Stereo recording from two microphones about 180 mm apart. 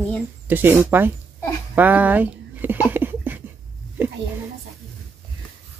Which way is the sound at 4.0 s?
10° right (ahead or behind).